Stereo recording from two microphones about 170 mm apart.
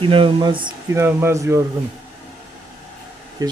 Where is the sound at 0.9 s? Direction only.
15° right (ahead or behind).